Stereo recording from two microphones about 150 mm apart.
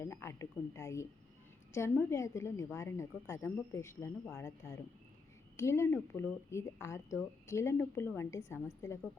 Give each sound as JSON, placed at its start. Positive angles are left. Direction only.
{"t": 0.0, "sound": "speech", "side_deg": 15}